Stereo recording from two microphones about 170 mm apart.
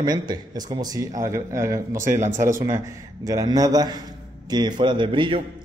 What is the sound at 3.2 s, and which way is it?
Speech, 20° right (ahead or behind).